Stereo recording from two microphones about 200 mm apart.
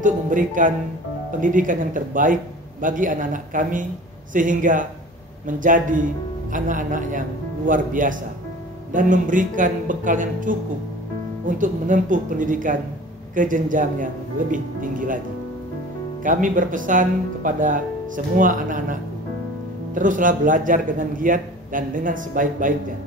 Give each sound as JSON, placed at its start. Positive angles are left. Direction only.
{"t": 0.0, "sound": "a man's voice", "side_deg": -40}
{"t": 11.5, "sound": "a man's voice", "side_deg": -40}
{"t": 16.3, "sound": "a man's voice", "side_deg": -40}